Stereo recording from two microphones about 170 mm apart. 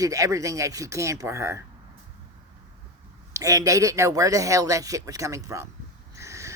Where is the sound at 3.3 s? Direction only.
20° right (ahead or behind).